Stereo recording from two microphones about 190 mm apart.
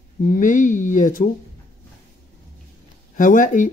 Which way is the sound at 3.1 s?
45° left (ahead or behind).